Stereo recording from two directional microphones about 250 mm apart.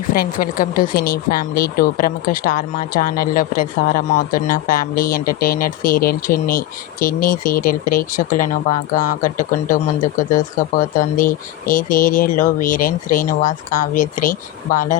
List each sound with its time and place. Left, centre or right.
0.1 s speech: left